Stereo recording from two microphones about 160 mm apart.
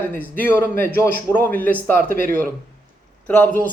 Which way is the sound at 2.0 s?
65° right (ahead or behind).